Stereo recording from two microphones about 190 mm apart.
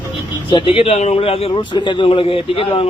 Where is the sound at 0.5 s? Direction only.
25° left (ahead or behind).